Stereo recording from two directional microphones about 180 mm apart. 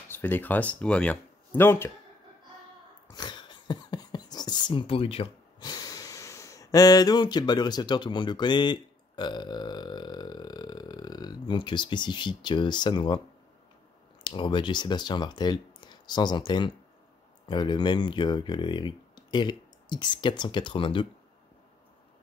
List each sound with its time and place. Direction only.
0.1 s speech: 10° left (ahead or behind)
3.1 s speech: 25° left (ahead or behind)
14.2 s speech: 25° left (ahead or behind)